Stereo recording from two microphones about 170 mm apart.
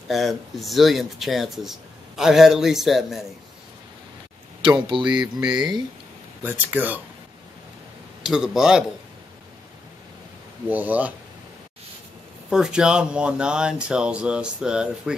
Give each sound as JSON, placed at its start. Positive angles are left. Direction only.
{"t": 0.1, "sound": "speech", "side_deg": 0}
{"t": 4.6, "sound": "speech", "side_deg": -25}
{"t": 6.4, "sound": "speech", "side_deg": -10}
{"t": 8.2, "sound": "speech", "side_deg": -5}
{"t": 10.7, "sound": "speech", "side_deg": -10}
{"t": 12.4, "sound": "speech", "side_deg": -5}